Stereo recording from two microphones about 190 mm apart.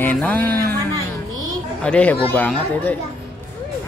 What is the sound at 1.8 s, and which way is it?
Speech, 5° left (ahead or behind).